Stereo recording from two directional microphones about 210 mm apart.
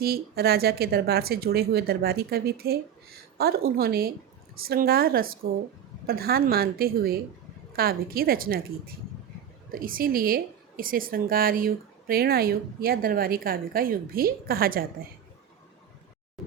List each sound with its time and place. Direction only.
0.0 s a woman's voice: 45° right (ahead or behind)
9.7 s a woman's voice: 45° right (ahead or behind)